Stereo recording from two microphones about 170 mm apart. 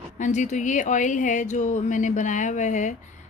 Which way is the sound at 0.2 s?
45° left (ahead or behind).